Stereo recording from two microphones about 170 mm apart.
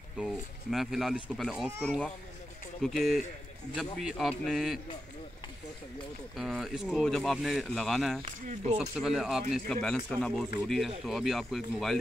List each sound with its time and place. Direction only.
0.2 s speech: centre (ahead or behind)
6.3 s speech: centre (ahead or behind)
8.3 s speech: 45° right (ahead or behind)
8.9 s speech: centre (ahead or behind)